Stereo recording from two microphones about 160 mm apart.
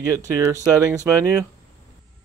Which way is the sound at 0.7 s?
20° right (ahead or behind).